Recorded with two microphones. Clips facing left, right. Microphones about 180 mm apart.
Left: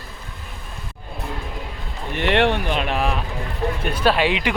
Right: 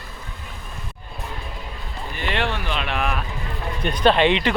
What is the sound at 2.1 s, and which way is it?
Speech, 65° left (ahead or behind).